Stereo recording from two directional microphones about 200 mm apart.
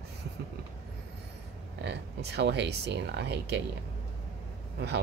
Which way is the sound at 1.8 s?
55° right (ahead or behind).